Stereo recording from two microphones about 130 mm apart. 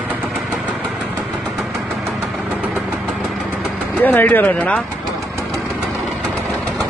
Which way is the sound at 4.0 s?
15° left (ahead or behind).